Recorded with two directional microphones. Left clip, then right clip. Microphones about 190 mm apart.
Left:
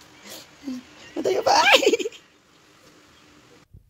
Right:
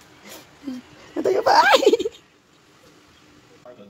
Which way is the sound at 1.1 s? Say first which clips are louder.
Right 3 dB; centre (ahead or behind).